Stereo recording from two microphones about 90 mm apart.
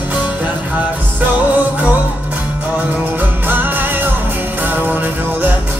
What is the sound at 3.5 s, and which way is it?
Music, 20° right (ahead or behind).